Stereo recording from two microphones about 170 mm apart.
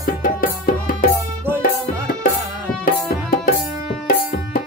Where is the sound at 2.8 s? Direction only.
55° left (ahead or behind).